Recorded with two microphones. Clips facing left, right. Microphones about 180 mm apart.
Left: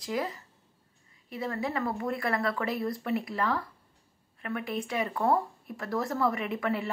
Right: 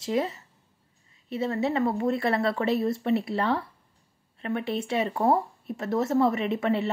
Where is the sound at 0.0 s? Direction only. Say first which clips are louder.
Right 5 dB; 25° right (ahead or behind).